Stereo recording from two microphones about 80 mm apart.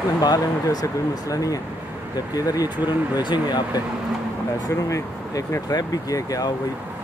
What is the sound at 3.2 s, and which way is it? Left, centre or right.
Speech, left.